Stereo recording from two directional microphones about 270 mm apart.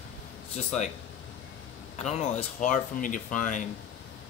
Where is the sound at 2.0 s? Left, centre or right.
Left.